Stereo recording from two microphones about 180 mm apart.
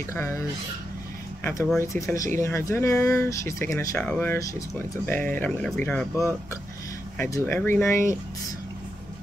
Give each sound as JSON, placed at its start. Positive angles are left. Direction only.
{"t": 0.1, "sound": "speech", "side_deg": 15}